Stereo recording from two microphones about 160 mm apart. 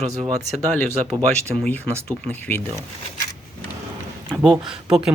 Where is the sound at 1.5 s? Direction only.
10° left (ahead or behind).